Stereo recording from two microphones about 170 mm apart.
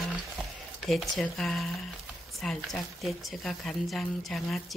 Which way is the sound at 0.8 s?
Centre (ahead or behind).